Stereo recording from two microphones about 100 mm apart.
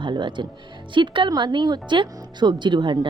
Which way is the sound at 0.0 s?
50° right (ahead or behind).